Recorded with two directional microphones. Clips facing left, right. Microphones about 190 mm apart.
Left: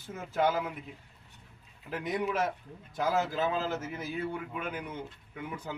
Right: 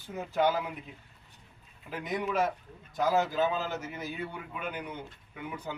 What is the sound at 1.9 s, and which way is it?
A man's voice, centre (ahead or behind).